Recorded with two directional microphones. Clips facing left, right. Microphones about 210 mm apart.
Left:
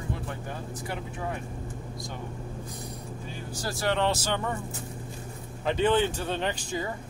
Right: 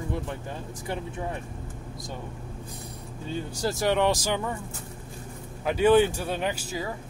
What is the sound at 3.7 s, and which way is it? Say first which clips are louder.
Speech: right 3 dB; 15° right (ahead or behind).